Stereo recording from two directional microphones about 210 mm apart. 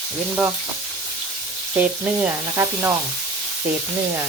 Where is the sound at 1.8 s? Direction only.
10° right (ahead or behind).